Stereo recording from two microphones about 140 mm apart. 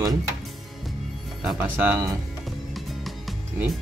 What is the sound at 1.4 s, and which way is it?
Speech, 10° right (ahead or behind).